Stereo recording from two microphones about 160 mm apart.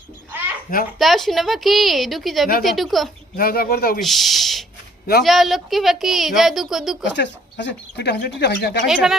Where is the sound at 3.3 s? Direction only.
65° left (ahead or behind).